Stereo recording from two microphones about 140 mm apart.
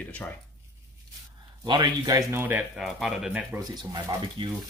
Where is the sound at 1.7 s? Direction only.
30° right (ahead or behind).